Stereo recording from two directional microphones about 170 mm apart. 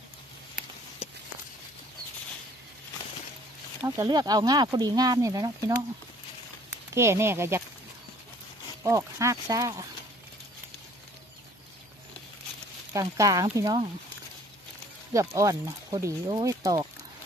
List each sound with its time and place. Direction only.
3.8 s speech: 20° right (ahead or behind)
6.9 s speech: 15° right (ahead or behind)
8.8 s speech: 20° right (ahead or behind)
12.9 s speech: 20° right (ahead or behind)
15.1 s speech: 20° right (ahead or behind)